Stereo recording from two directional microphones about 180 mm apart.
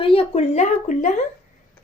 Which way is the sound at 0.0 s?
30° left (ahead or behind).